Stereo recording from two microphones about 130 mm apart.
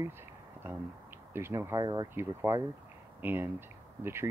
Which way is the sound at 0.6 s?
15° right (ahead or behind).